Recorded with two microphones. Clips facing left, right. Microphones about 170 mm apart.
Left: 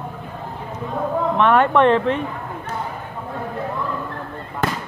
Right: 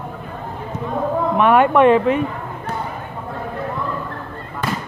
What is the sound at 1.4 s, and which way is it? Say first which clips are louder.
Speech: right 2 dB; 10° right (ahead or behind).